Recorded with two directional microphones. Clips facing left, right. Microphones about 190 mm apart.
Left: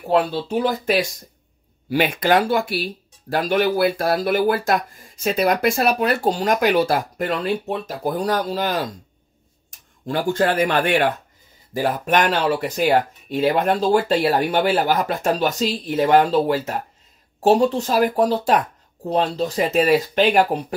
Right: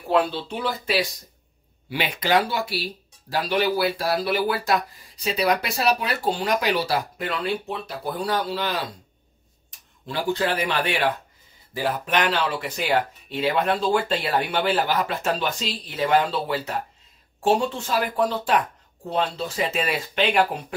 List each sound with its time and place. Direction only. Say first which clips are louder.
0.1 s speech: left 3 dB; 45° left (ahead or behind)